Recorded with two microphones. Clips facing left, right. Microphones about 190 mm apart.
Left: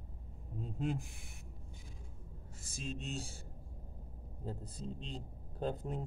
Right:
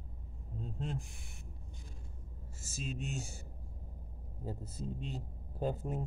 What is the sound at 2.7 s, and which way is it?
Speech, 5° right (ahead or behind).